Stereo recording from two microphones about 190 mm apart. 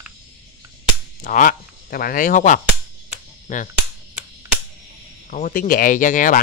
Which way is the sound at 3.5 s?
40° left (ahead or behind).